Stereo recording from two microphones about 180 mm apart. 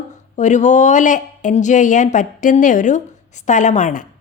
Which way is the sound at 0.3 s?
40° left (ahead or behind).